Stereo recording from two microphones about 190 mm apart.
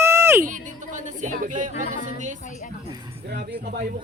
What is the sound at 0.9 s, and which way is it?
Speech, 40° right (ahead or behind).